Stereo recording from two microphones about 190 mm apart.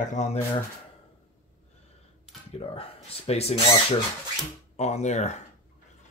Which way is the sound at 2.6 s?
30° left (ahead or behind).